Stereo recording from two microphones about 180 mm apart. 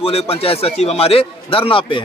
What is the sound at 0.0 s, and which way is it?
Speech, 30° left (ahead or behind).